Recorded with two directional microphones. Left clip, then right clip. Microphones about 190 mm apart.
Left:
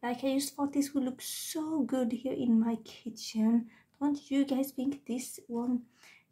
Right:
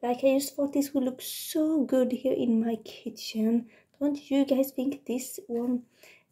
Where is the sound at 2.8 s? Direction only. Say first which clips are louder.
Right 6 dB; 50° left (ahead or behind).